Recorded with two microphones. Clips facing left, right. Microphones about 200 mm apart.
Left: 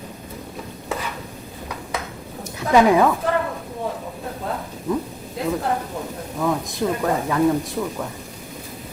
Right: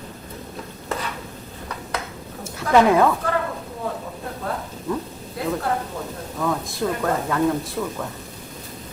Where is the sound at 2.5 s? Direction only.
15° left (ahead or behind).